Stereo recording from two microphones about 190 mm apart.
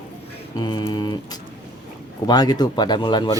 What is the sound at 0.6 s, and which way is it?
Speech, 20° left (ahead or behind).